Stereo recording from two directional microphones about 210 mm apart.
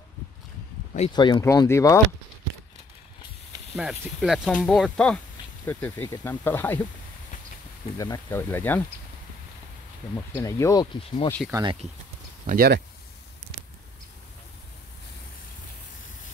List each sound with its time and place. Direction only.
0.9 s speech: 25° left (ahead or behind)
3.7 s speech: centre (ahead or behind)
8.0 s speech: 15° left (ahead or behind)
10.3 s speech: 15° left (ahead or behind)
11.4 s speech: centre (ahead or behind)
12.4 s speech: 45° right (ahead or behind)